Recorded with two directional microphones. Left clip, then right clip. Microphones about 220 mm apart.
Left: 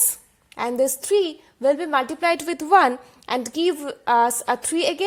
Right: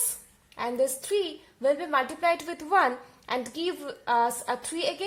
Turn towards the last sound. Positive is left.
turn(degrees=45)  # may be behind; listen again after turning